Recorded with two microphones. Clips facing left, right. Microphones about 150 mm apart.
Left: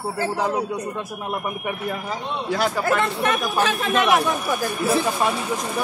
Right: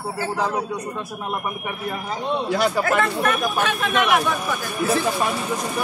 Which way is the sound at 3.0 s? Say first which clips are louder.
Right 1 dB; 30° left (ahead or behind).